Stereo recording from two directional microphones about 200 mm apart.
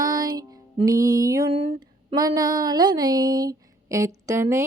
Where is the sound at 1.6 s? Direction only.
25° right (ahead or behind).